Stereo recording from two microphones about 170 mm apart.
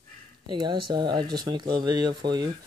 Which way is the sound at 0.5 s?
25° right (ahead or behind).